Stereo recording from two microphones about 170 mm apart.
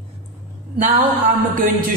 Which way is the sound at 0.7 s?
60° right (ahead or behind).